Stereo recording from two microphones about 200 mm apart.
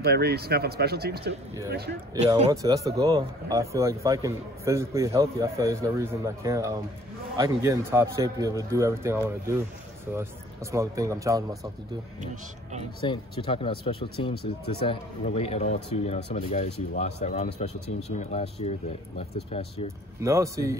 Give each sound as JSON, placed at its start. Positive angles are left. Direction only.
{"t": 0.0, "sound": "speech", "side_deg": -50}
{"t": 2.5, "sound": "a man's voice", "side_deg": -15}
{"t": 13.0, "sound": "speech", "side_deg": 25}
{"t": 14.3, "sound": "speech", "side_deg": 50}
{"t": 14.9, "sound": "speech", "side_deg": 30}
{"t": 20.2, "sound": "a man's voice", "side_deg": -15}